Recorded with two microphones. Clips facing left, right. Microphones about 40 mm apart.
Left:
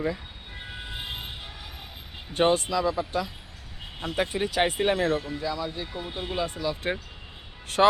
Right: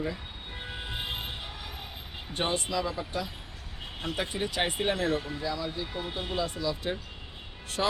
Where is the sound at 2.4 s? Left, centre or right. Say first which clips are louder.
Left 7 dB; left.